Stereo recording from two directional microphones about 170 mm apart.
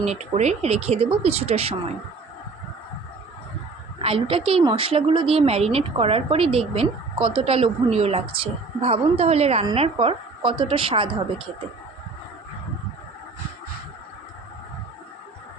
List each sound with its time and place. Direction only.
0.0 s speech: 40° right (ahead or behind)
4.0 s speech: 35° right (ahead or behind)